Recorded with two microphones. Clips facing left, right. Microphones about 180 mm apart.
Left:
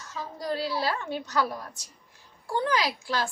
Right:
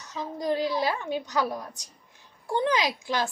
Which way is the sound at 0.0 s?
20° right (ahead or behind).